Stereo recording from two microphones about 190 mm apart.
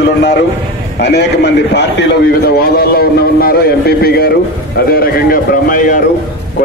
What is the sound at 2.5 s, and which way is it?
A man's voice, 50° left (ahead or behind).